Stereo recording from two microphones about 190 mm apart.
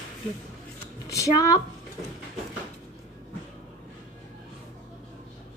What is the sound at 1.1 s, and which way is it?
Speech, 15° left (ahead or behind).